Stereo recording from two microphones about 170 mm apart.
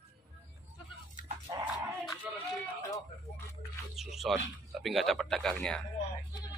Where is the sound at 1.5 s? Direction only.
25° right (ahead or behind).